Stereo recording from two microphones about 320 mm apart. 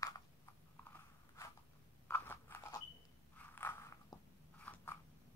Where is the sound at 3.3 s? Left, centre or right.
Centre.